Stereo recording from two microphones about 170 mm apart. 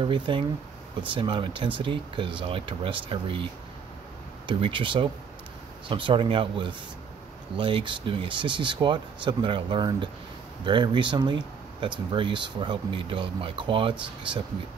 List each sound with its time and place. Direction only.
0.0 s speech: 30° right (ahead or behind)
4.5 s speech: 30° right (ahead or behind)